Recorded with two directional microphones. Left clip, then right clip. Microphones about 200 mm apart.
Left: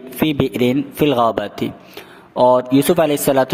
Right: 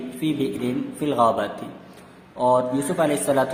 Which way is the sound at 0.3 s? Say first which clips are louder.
Left 6 dB; 45° left (ahead or behind).